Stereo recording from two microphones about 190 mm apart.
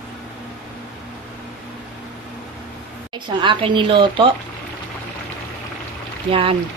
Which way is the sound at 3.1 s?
25° right (ahead or behind).